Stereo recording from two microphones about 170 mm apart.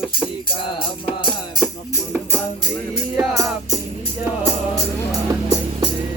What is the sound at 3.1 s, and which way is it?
Music, 20° right (ahead or behind).